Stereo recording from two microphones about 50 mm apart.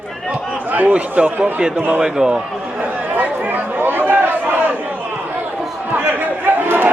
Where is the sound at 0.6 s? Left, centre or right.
Right.